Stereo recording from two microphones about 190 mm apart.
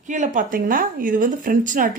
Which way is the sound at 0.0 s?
40° right (ahead or behind).